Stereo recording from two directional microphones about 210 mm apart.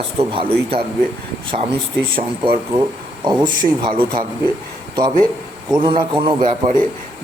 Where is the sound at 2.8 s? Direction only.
20° right (ahead or behind).